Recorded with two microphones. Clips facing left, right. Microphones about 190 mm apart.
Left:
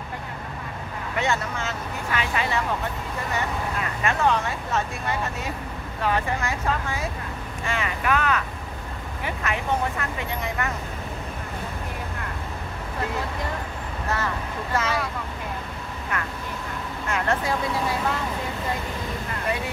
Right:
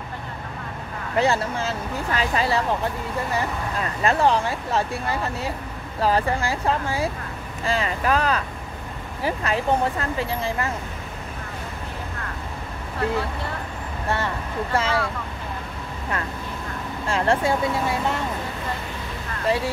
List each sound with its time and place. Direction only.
1.1 s speech: 35° right (ahead or behind)
4.0 s speech: 35° right (ahead or behind)
5.9 s speech: 35° right (ahead or behind)
14.0 s speech: 30° right (ahead or behind)
17.1 s speech: 30° right (ahead or behind)
19.4 s speech: 30° right (ahead or behind)